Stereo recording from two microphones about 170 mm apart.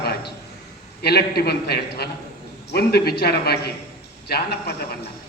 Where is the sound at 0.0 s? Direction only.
70° left (ahead or behind).